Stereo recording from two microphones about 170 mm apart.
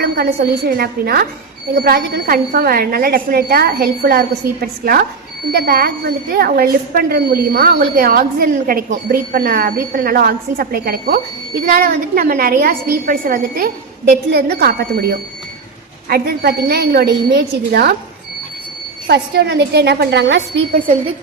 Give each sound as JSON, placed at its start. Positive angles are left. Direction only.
{"t": 0.0, "sound": "a woman's voice", "side_deg": -65}
{"t": 14.3, "sound": "a woman's voice", "side_deg": -70}
{"t": 19.0, "sound": "a woman's voice", "side_deg": -70}